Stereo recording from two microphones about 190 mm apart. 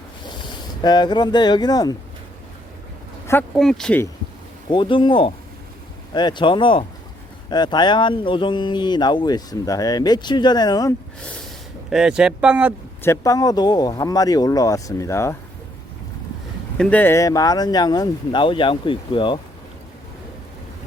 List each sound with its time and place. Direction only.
0.8 s speech: 20° left (ahead or behind)
3.5 s speech: centre (ahead or behind)
4.7 s speech: 25° left (ahead or behind)
11.9 s speech: 5° right (ahead or behind)
13.0 s speech: 15° left (ahead or behind)
16.7 s speech: 5° left (ahead or behind); by 19.4 s 25° left (ahead or behind)